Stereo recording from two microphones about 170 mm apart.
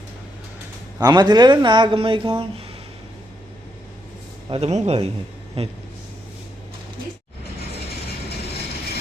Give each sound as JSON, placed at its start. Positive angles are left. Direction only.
{"t": 0.9, "sound": "speech", "side_deg": -25}
{"t": 4.4, "sound": "speech", "side_deg": -35}